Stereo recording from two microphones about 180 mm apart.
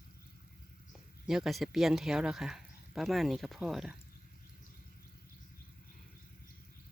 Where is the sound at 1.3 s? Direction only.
Centre (ahead or behind).